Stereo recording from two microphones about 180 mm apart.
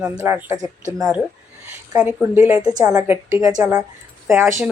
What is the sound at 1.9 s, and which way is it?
Speech, 10° right (ahead or behind).